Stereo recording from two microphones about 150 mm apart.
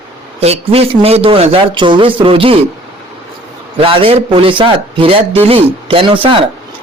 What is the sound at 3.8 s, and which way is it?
A man's voice, 35° right (ahead or behind).